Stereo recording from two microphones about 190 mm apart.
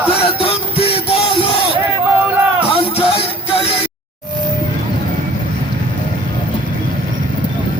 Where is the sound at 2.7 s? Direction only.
30° left (ahead or behind).